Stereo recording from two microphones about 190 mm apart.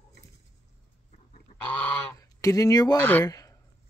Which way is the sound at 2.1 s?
20° left (ahead or behind).